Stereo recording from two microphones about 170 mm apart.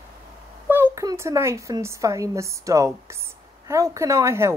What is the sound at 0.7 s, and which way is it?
A woman's voice, 15° right (ahead or behind).